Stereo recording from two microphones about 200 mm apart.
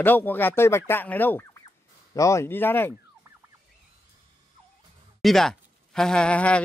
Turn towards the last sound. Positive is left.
turn(degrees=5)  # may be behind; listen again after turning